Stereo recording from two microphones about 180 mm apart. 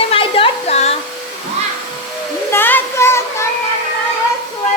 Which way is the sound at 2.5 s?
10° left (ahead or behind).